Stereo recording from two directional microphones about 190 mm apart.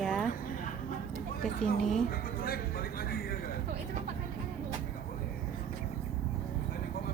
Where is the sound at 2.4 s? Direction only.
50° left (ahead or behind).